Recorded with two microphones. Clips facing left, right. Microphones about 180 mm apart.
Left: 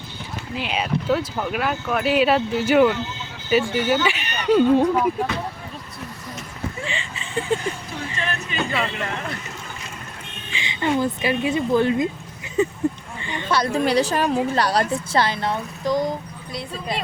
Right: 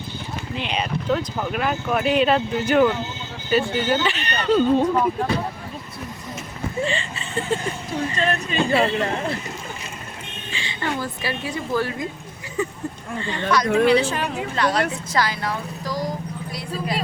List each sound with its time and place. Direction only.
0.5 s speech: 5° left (ahead or behind)
6.8 s a sound: 15° left (ahead or behind)
8.1 s speech: 35° right (ahead or behind)
10.5 s speech: 20° left (ahead or behind)
12.6 s a sound: 20° left (ahead or behind)
13.5 s speech: 30° left (ahead or behind)